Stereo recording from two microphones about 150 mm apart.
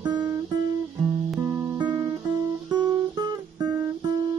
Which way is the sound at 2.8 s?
30° right (ahead or behind).